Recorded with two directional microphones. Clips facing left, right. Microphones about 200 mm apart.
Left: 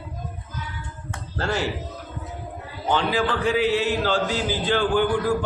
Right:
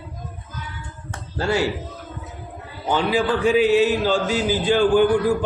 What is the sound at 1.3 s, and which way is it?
Speech, 10° right (ahead or behind).